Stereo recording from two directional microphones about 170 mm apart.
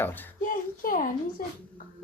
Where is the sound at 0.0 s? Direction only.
10° left (ahead or behind).